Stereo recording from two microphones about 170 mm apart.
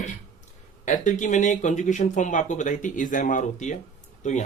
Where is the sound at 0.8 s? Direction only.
45° left (ahead or behind).